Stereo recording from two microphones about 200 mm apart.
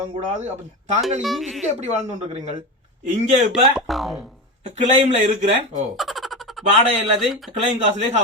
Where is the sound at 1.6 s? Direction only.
35° right (ahead or behind).